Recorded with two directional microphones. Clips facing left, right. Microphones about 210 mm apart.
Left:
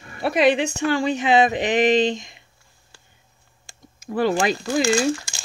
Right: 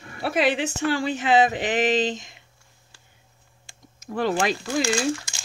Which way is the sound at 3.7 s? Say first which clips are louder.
Left 3 dB; 45° left (ahead or behind).